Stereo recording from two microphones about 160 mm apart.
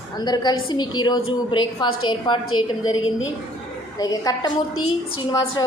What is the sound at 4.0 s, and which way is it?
A woman's voice, 25° left (ahead or behind).